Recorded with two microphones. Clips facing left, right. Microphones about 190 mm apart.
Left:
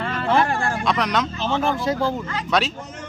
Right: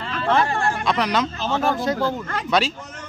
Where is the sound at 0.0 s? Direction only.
55° left (ahead or behind).